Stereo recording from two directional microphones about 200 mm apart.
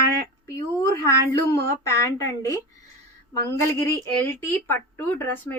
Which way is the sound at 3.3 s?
15° left (ahead or behind).